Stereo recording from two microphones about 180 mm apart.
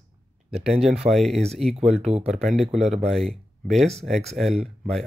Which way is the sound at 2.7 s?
35° right (ahead or behind).